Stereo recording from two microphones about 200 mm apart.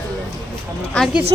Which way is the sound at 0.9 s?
Centre (ahead or behind).